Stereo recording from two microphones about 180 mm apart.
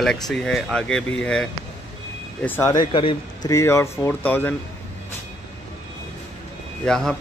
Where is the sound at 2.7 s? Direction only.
25° left (ahead or behind).